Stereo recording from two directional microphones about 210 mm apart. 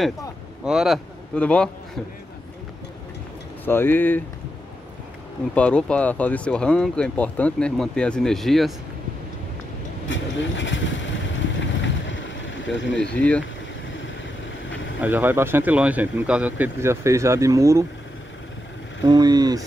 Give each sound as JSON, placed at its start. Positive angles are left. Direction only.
{"t": 0.7, "sound": "speech", "side_deg": 0}
{"t": 3.6, "sound": "speech", "side_deg": 10}
{"t": 5.5, "sound": "speech", "side_deg": 5}
{"t": 10.0, "sound": "vehicle", "side_deg": 60}
{"t": 13.0, "sound": "speech", "side_deg": 5}
{"t": 15.0, "sound": "speech", "side_deg": -10}
{"t": 19.0, "sound": "speech", "side_deg": -20}